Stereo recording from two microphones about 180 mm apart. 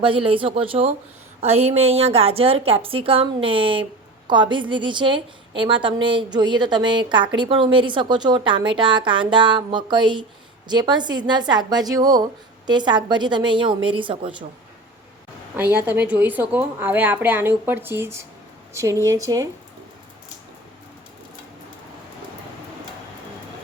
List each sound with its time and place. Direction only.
0.0 s a woman's voice: 30° right (ahead or behind)
15.5 s a woman's voice: 10° right (ahead or behind)